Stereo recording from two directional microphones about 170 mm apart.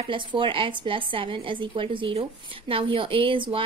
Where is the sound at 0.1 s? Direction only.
30° right (ahead or behind).